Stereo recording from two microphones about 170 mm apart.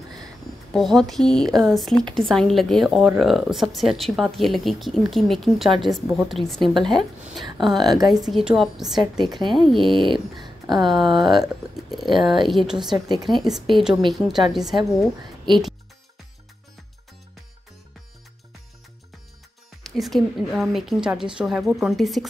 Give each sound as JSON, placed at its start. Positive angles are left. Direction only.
{"t": 0.1, "sound": "speech", "side_deg": 0}
{"t": 10.4, "sound": "a sound", "side_deg": -25}
{"t": 11.1, "sound": "speech", "side_deg": 0}
{"t": 12.1, "sound": "speech", "side_deg": -30}
{"t": 12.4, "sound": "speech", "side_deg": 0}
{"t": 20.0, "sound": "speech", "side_deg": 0}